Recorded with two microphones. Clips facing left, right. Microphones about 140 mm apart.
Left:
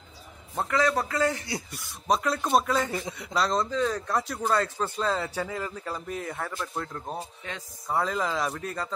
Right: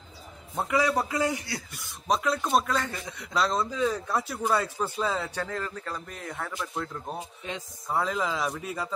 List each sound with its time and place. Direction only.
0.7 s a man's voice: 15° right (ahead or behind)
1.7 s speech: centre (ahead or behind)
2.8 s a man's voice: 20° left (ahead or behind)
3.2 s speech: centre (ahead or behind)
7.4 s speech: 20° right (ahead or behind)
7.9 s speech: centre (ahead or behind)